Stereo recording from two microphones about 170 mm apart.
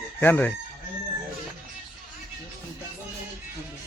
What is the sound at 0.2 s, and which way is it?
Chicken, 10° left (ahead or behind).